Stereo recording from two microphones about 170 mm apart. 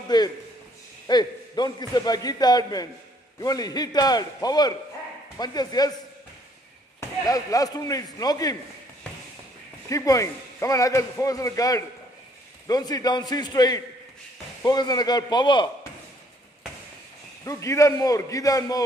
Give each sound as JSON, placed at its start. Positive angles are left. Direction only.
{"t": 0.1, "sound": "a man's voice", "side_deg": 25}
{"t": 7.0, "sound": "a man's voice", "side_deg": 20}
{"t": 9.8, "sound": "a man's voice", "side_deg": 20}
{"t": 17.5, "sound": "a man's voice", "side_deg": 20}